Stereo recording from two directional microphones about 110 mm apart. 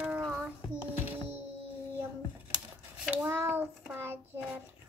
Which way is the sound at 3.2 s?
20° right (ahead or behind).